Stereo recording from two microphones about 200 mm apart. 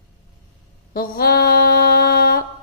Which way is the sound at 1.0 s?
50° left (ahead or behind).